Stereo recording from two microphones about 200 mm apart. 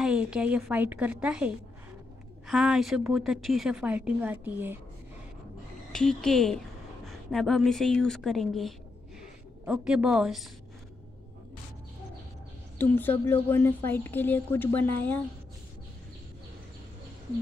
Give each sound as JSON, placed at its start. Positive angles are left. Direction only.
{"t": 0.0, "sound": "a woman's voice", "side_deg": -5}
{"t": 5.9, "sound": "a woman's voice", "side_deg": 0}
{"t": 12.7, "sound": "a woman's voice", "side_deg": 10}